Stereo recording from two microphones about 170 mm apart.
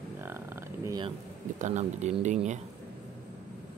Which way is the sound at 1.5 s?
45° right (ahead or behind).